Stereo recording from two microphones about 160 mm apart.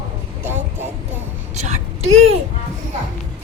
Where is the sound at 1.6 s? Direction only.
45° right (ahead or behind).